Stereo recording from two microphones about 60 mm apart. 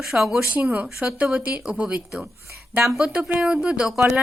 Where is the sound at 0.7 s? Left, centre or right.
Right.